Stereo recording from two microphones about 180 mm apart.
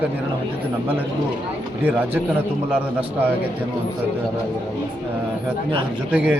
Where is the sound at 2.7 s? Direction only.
10° right (ahead or behind).